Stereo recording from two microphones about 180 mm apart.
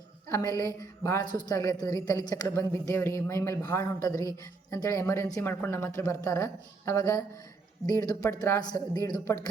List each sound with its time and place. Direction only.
0.3 s a woman's voice: 20° left (ahead or behind)